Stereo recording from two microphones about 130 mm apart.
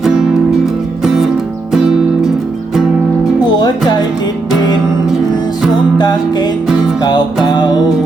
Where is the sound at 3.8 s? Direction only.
30° left (ahead or behind).